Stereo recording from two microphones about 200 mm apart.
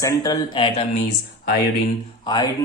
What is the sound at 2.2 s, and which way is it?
Speech, 20° left (ahead or behind).